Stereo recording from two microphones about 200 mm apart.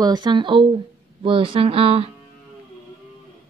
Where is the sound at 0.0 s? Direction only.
20° right (ahead or behind).